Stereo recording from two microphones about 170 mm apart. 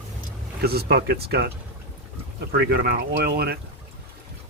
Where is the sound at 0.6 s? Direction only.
65° right (ahead or behind).